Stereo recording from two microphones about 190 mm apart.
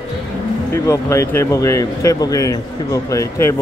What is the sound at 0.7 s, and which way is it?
Speech, 15° left (ahead or behind).